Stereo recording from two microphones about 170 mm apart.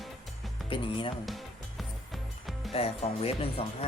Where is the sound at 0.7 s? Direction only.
30° left (ahead or behind).